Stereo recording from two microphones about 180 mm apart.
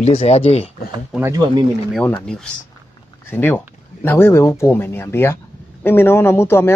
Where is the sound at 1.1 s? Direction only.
15° right (ahead or behind).